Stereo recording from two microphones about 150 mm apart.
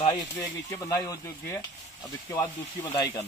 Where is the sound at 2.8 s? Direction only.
25° left (ahead or behind).